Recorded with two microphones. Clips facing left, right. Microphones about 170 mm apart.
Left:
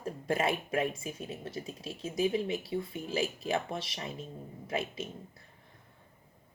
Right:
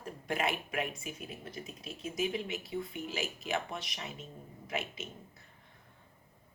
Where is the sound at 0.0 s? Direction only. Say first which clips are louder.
Left 4 dB; 30° left (ahead or behind).